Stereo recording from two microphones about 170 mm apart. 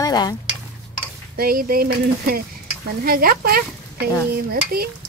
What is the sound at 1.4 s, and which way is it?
Speech, 60° right (ahead or behind).